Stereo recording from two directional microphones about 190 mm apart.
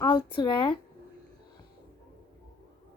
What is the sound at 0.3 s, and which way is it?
Speech, 25° left (ahead or behind).